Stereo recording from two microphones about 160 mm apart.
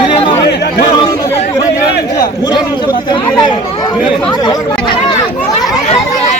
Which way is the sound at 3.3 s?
25° left (ahead or behind).